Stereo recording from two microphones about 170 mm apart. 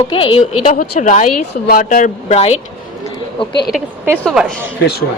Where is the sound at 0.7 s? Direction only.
50° left (ahead or behind).